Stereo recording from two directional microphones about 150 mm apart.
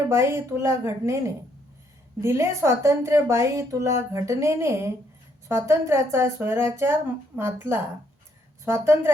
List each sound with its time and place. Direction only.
0.1 s a woman's voice: 20° right (ahead or behind)
2.2 s a woman's voice: 20° right (ahead or behind)